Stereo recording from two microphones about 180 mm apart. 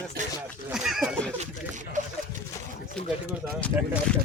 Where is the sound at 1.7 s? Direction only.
45° right (ahead or behind).